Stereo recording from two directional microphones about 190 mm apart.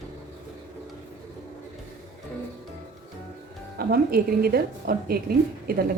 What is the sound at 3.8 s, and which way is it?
A woman's voice, 50° right (ahead or behind).